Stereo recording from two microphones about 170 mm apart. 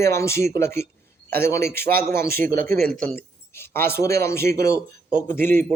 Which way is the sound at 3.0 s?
15° left (ahead or behind).